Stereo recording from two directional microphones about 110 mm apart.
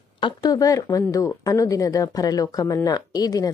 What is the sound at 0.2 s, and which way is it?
Speech, 35° left (ahead or behind).